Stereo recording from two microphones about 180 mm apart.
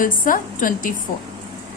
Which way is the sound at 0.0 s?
50° left (ahead or behind).